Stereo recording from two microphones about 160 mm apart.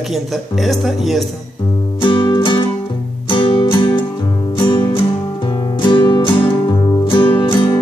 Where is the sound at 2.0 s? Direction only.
30° left (ahead or behind).